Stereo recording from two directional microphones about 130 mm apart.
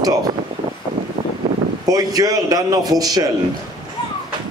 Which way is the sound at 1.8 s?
30° right (ahead or behind).